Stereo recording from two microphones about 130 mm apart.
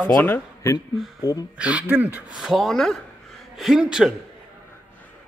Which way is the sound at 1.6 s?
10° right (ahead or behind).